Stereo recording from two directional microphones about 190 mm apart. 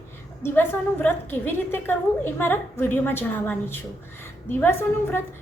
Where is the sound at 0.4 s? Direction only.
10° left (ahead or behind).